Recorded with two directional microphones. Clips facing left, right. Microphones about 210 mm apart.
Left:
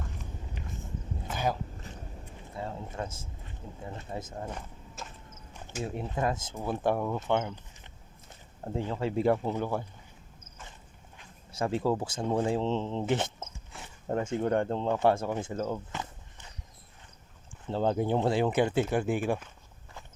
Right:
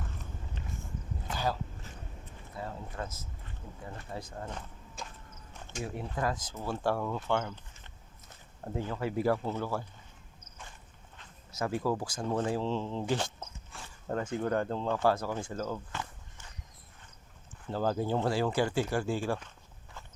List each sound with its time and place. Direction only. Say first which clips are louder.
0.6 s a sound: left 2 dB; 15° left (ahead or behind)
2.6 s speech: left 3 dB; 25° left (ahead or behind)
4.4 s a sound: left 2 dB; 10° left (ahead or behind)
5.8 s speech: left 3 dB; 25° left (ahead or behind)
11.5 s speech: left 3 dB; 30° left (ahead or behind)
17.7 s speech: left 3 dB; 25° left (ahead or behind)